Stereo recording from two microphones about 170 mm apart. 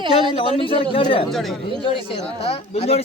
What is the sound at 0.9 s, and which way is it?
Speech, 30° left (ahead or behind).